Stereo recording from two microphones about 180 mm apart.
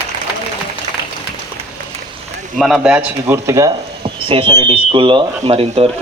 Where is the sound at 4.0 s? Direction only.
30° right (ahead or behind).